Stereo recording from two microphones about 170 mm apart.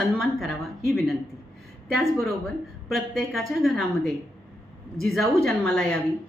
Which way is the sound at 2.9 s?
Centre (ahead or behind).